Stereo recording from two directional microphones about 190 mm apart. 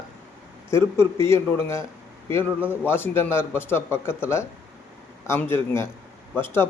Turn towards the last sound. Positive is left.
turn(degrees=10)  # may be behind; listen again after turning